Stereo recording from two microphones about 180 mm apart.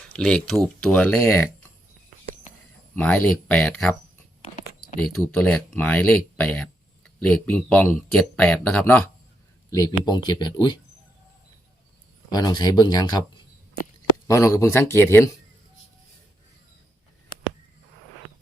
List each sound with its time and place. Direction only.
0.1 s speech: 5° left (ahead or behind)
2.9 s speech: 10° left (ahead or behind)
5.0 s speech: 5° left (ahead or behind)
9.7 s speech: 20° left (ahead or behind)
12.3 s speech: 25° left (ahead or behind)
14.3 s speech: 15° left (ahead or behind)